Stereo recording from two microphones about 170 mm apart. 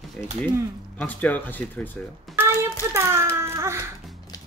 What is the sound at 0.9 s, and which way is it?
Speech, 10° left (ahead or behind).